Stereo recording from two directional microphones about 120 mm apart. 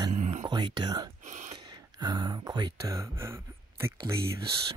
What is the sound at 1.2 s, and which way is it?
Speech, 90° right.